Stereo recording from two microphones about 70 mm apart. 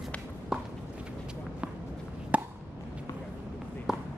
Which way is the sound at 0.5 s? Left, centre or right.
Centre.